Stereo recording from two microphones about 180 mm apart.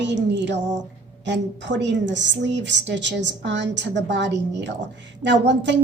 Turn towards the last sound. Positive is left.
turn(degrees=-80)